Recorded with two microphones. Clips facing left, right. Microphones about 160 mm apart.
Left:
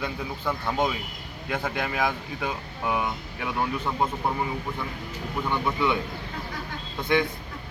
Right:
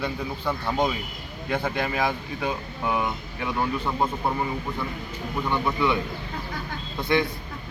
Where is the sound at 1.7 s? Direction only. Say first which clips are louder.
Right 1 dB; 5° left (ahead or behind).